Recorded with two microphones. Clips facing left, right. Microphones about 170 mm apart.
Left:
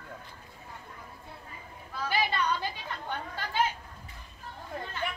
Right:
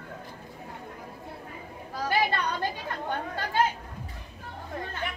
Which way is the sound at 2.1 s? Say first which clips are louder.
Right 2 dB; 55° right (ahead or behind).